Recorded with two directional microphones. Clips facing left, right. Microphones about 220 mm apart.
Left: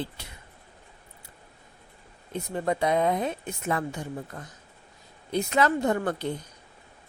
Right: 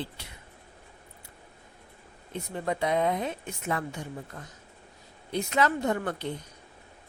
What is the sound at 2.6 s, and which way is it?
A woman's voice, 40° left (ahead or behind).